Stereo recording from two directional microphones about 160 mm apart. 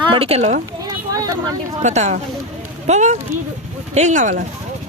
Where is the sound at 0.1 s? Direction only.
35° right (ahead or behind).